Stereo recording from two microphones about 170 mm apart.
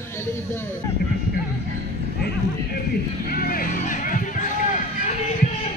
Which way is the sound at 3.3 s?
60° left (ahead or behind).